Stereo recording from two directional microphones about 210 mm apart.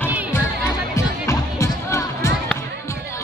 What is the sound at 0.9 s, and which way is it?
Music, 15° left (ahead or behind).